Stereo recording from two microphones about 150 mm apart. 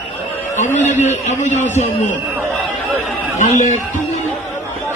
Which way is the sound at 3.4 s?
55° left (ahead or behind).